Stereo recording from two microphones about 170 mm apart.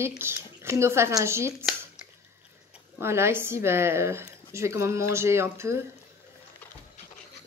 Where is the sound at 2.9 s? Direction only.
15° right (ahead or behind).